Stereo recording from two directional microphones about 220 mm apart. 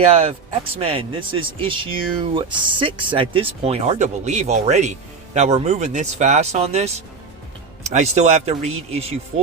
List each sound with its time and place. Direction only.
0.0 s speech: 25° right (ahead or behind)